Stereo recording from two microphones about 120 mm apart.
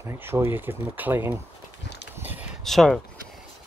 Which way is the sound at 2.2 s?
15° right (ahead or behind).